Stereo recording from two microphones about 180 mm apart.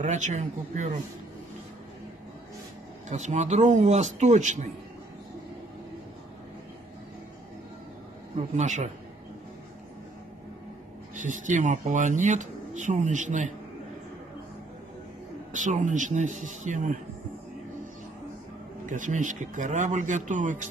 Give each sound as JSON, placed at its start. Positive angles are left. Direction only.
{"t": 0.0, "sound": "a man's voice", "side_deg": -40}
{"t": 3.1, "sound": "a man's voice", "side_deg": -40}
{"t": 8.4, "sound": "a man's voice", "side_deg": -40}
{"t": 11.1, "sound": "speech", "side_deg": -45}
{"t": 15.5, "sound": "speech", "side_deg": -45}
{"t": 18.9, "sound": "speech", "side_deg": -45}